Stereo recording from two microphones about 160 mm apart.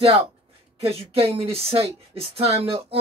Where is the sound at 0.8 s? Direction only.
35° right (ahead or behind).